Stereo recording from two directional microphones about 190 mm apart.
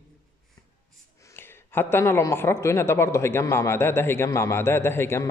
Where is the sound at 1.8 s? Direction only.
10° left (ahead or behind).